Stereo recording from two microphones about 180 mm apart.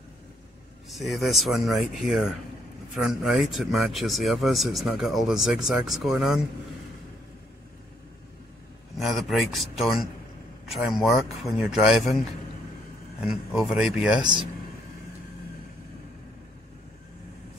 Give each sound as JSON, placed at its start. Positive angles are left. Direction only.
{"t": 0.8, "sound": "speech", "side_deg": 0}
{"t": 8.9, "sound": "speech", "side_deg": 0}
{"t": 13.2, "sound": "speech", "side_deg": 0}
{"t": 14.2, "sound": "speech", "side_deg": -25}